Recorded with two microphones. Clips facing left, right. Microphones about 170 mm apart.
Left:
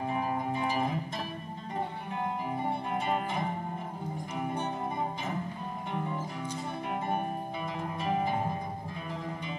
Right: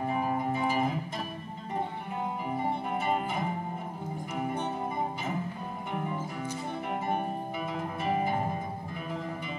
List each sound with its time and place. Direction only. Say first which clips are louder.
0.2 s guitar: right 2 dB; 5° right (ahead or behind)
8.0 s music: right 1 dB; 5° right (ahead or behind)